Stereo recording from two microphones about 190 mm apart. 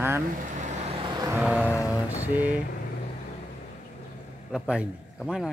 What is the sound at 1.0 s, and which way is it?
Vehicle, 20° right (ahead or behind).